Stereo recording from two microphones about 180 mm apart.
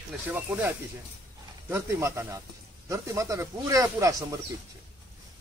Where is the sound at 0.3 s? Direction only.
10° right (ahead or behind).